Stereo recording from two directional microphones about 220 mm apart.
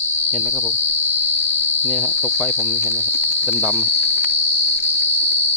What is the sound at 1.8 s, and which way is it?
Cricket, 5° left (ahead or behind).